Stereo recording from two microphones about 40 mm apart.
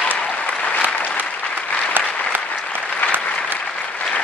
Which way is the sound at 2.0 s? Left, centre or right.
Right.